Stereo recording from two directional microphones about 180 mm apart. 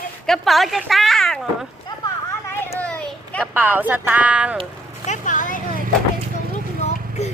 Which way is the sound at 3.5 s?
10° right (ahead or behind).